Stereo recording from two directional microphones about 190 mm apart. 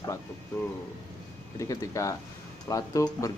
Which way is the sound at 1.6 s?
15° left (ahead or behind).